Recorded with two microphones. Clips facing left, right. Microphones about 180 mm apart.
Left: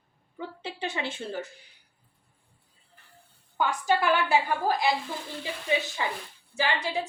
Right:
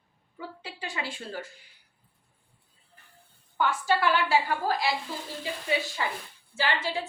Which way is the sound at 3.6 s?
15° left (ahead or behind).